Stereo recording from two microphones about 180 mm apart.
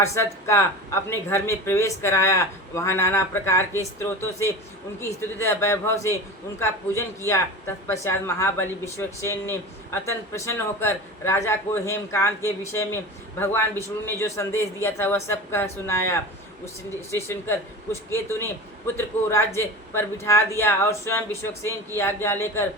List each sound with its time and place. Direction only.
0.0 s speech: 15° left (ahead or behind)